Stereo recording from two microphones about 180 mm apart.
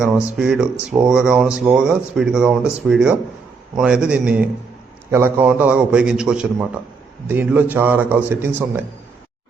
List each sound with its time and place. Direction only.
0.3 s a man's voice: 5° right (ahead or behind)